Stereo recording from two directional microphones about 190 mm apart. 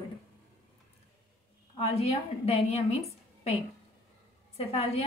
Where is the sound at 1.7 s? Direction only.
30° left (ahead or behind).